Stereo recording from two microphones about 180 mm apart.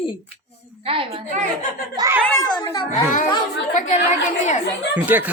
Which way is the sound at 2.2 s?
15° left (ahead or behind).